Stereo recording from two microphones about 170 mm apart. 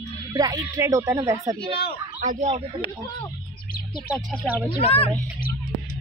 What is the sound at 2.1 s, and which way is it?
Speech, 40° right (ahead or behind).